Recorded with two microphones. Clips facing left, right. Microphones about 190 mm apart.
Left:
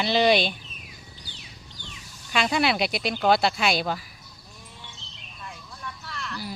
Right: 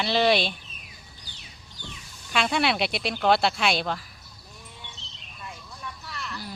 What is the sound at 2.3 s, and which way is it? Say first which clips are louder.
Speech: left 1 dB; centre (ahead or behind).